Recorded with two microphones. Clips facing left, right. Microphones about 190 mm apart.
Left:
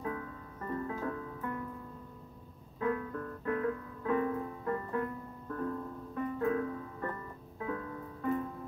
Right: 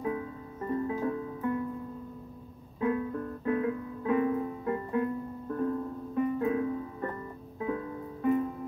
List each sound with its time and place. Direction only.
0.0 s music: 20° right (ahead or behind)
2.8 s music: 20° right (ahead or behind)